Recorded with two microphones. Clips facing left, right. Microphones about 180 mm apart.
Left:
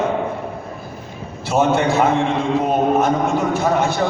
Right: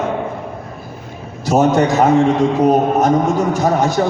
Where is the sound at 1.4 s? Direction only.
40° right (ahead or behind).